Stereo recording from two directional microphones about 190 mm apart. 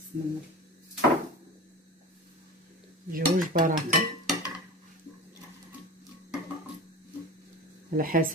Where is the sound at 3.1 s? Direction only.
45° right (ahead or behind).